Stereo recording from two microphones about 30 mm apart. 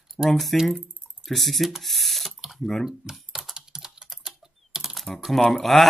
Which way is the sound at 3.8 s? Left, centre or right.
Centre.